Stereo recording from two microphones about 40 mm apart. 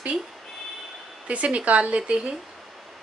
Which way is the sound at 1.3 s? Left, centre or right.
Right.